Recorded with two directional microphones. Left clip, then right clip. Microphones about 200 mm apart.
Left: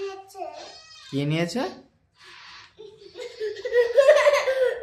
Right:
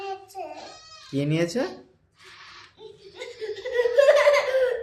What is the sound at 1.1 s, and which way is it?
Speech, 25° left (ahead or behind).